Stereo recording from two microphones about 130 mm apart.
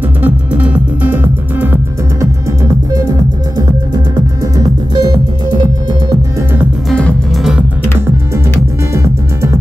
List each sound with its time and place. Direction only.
0.2 s music: 10° right (ahead or behind)
3.5 s music: 25° right (ahead or behind)
6.9 s music: 10° left (ahead or behind)
8.9 s music: 20° right (ahead or behind)